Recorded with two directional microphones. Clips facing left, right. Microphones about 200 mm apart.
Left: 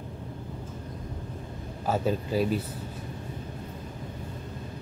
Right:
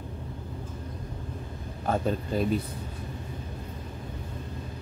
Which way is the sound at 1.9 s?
5° left (ahead or behind).